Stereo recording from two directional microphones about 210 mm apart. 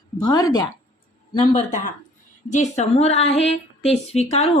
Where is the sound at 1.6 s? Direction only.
35° left (ahead or behind).